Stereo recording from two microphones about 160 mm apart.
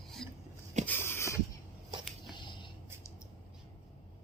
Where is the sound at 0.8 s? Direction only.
15° left (ahead or behind).